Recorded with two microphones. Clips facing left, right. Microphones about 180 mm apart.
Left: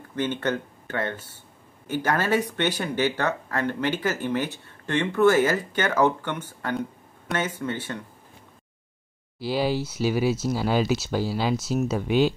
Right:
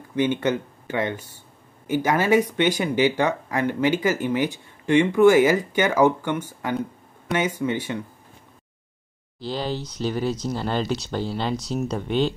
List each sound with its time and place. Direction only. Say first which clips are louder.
0.1 s speech: right 4 dB; 10° right (ahead or behind)
9.4 s speech: left 3 dB; 10° left (ahead or behind)